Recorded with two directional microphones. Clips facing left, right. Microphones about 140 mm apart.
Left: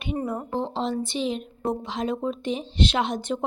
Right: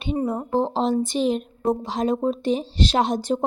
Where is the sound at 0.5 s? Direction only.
40° right (ahead or behind).